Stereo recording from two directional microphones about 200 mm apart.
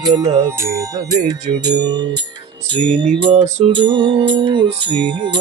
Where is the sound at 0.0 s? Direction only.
20° right (ahead or behind).